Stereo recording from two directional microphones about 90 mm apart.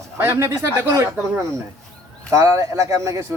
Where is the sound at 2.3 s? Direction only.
35° right (ahead or behind).